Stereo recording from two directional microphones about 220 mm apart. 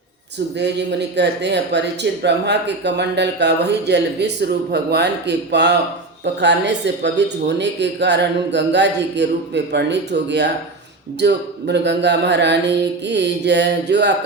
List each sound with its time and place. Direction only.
0.6 s speech: 50° right (ahead or behind)